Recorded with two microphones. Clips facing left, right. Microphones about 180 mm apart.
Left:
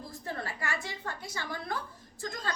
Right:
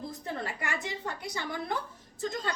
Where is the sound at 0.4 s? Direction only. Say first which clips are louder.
Right 2 dB; 20° right (ahead or behind).